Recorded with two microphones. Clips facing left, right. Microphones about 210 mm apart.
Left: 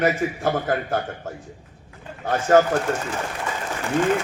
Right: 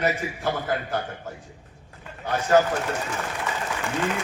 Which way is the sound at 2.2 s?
50° left (ahead or behind).